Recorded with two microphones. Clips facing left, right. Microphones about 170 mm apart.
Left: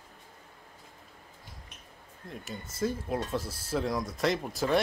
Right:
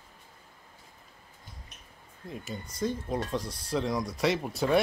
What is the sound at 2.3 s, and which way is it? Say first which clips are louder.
Speech: right 2 dB; centre (ahead or behind).